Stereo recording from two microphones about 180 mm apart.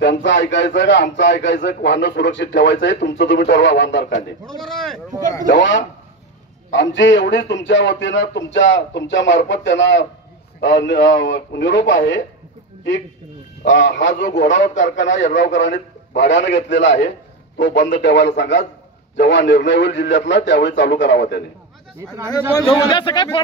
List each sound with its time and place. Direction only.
0.0 s a man's voice: 85° left
4.6 s speech: centre (ahead or behind)
5.5 s a man's voice: 90° left
10.6 s a man's voice: 80° left
13.6 s a man's voice: 90° left
14.6 s a man's voice: 40° left (ahead or behind)
15.3 s a man's voice: 85° left
21.9 s speech: 15° right (ahead or behind)
22.6 s speech: 20° left (ahead or behind)